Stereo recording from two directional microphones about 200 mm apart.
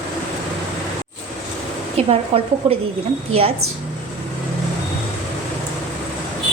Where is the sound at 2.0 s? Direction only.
30° right (ahead or behind).